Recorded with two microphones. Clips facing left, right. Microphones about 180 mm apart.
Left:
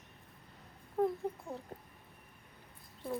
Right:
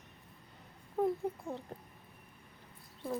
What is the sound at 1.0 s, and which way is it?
Speech, centre (ahead or behind).